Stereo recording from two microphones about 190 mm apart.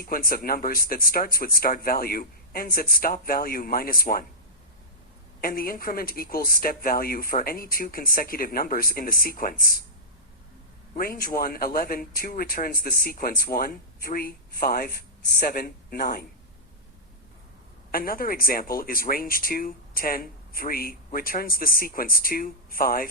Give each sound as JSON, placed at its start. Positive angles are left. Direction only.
{"t": 0.0, "sound": "speech", "side_deg": 50}
{"t": 5.4, "sound": "speech", "side_deg": 50}
{"t": 10.9, "sound": "speech", "side_deg": 50}
{"t": 17.9, "sound": "speech", "side_deg": 50}